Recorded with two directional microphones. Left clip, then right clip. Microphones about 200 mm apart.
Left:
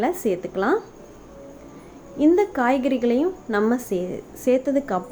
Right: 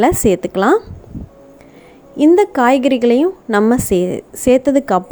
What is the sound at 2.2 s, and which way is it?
A woman's voice, 45° right (ahead or behind).